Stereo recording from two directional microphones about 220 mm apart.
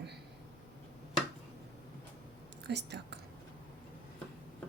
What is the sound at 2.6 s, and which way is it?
Speech, 50° right (ahead or behind).